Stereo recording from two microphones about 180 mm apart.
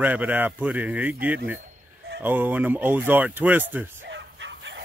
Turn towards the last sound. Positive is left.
turn(degrees=-80)